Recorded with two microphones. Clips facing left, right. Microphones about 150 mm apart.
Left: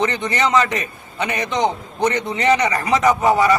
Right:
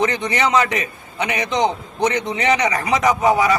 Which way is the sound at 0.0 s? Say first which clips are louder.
Even; 15° right (ahead or behind).